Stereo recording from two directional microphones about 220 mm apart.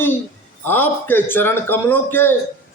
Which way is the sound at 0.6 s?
10° left (ahead or behind).